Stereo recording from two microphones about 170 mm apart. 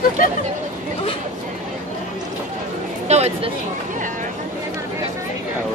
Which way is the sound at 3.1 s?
40° right (ahead or behind).